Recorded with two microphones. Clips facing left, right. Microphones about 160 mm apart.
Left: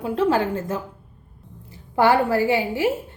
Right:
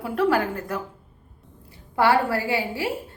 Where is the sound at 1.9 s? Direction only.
20° left (ahead or behind).